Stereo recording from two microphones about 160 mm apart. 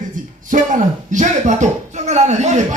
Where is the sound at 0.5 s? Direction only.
50° right (ahead or behind).